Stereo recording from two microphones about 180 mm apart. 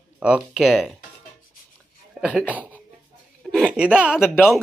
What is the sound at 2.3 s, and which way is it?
Speech, 5° left (ahead or behind).